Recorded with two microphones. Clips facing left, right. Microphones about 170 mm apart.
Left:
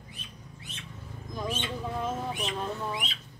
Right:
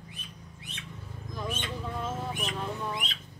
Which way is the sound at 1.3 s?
15° left (ahead or behind).